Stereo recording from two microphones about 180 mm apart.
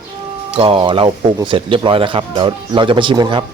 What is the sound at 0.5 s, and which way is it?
Speech, 30° right (ahead or behind).